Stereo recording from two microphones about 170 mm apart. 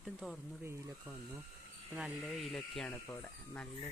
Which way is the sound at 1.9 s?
Centre (ahead or behind).